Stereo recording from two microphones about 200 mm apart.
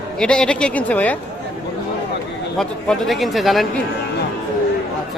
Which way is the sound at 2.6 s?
Centre (ahead or behind).